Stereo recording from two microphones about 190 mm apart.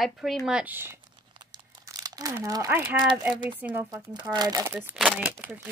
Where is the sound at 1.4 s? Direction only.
20° right (ahead or behind).